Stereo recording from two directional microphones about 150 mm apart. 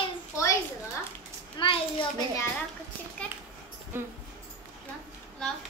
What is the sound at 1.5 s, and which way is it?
Speech, 35° left (ahead or behind).